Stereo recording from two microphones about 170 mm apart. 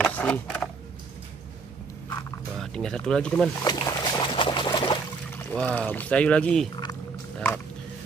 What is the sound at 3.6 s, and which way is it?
Boat, 25° left (ahead or behind).